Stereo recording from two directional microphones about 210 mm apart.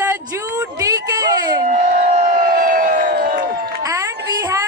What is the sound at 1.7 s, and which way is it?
Crowd, 40° right (ahead or behind).